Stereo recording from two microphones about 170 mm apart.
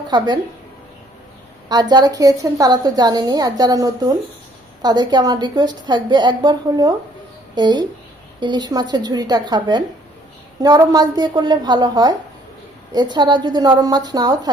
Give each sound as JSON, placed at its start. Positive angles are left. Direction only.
{"t": 1.7, "sound": "a woman's voice", "side_deg": -25}